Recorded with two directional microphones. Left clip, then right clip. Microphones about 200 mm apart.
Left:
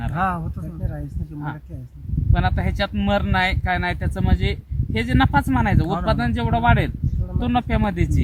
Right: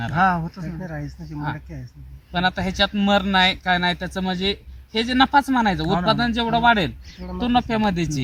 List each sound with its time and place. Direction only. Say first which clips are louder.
0.1 s speech: right 4 dB; 10° left (ahead or behind)
2.3 s speech: right 3 dB; 15° right (ahead or behind)